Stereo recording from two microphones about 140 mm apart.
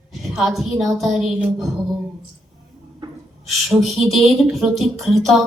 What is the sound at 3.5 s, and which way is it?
Speech, centre (ahead or behind).